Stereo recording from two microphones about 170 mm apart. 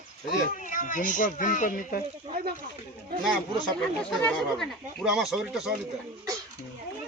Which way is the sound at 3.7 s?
5° left (ahead or behind).